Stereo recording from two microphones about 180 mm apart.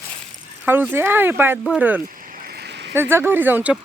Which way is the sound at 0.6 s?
10° right (ahead or behind).